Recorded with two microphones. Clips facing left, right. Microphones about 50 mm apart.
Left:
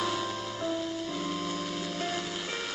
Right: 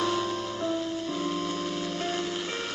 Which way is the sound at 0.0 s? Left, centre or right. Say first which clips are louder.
Right 4 dB; centre.